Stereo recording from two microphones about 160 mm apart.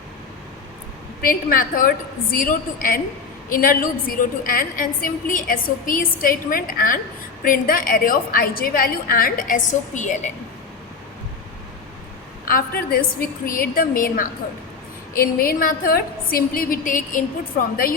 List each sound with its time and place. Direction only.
1.2 s a woman's voice: 60° left (ahead or behind)
12.5 s a woman's voice: 60° left (ahead or behind)